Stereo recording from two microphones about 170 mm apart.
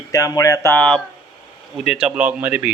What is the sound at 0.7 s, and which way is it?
Speech, 5° left (ahead or behind).